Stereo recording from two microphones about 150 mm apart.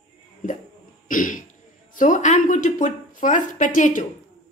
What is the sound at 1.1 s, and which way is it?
A woman's voice, 65° left (ahead or behind).